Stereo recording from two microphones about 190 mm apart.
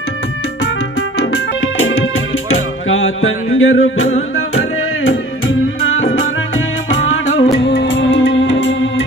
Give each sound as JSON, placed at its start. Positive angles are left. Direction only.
{"t": 1.3, "sound": "music", "side_deg": 90}
{"t": 6.9, "sound": "music", "side_deg": 80}
{"t": 7.5, "sound": "music", "side_deg": 65}